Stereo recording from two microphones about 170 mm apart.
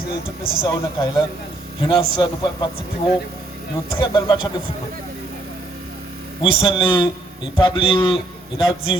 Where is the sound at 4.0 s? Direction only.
25° left (ahead or behind).